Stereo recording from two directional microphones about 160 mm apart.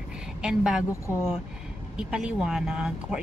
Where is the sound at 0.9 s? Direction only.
15° left (ahead or behind).